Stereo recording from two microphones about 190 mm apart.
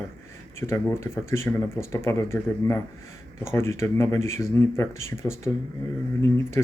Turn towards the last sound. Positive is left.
turn(degrees=15)  # may be behind; listen again after turning